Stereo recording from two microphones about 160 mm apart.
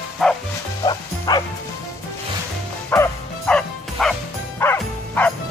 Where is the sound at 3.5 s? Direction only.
5° left (ahead or behind).